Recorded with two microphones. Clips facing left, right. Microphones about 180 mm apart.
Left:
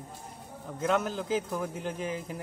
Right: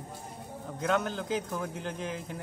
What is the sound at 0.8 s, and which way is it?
A man's voice, 5° left (ahead or behind).